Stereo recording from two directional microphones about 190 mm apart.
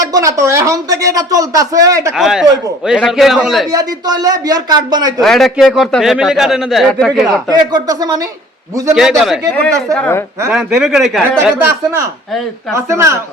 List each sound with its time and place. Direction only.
0.0 s speech: 20° right (ahead or behind)
2.1 s a man's voice: centre (ahead or behind)
3.7 s speech: 20° right (ahead or behind)
5.2 s a man's voice: centre (ahead or behind)
7.3 s speech: 20° right (ahead or behind)
9.6 s speech: 10° left (ahead or behind)
10.5 s a man's voice: 5° right (ahead or behind)
12.7 s speech: 15° right (ahead or behind)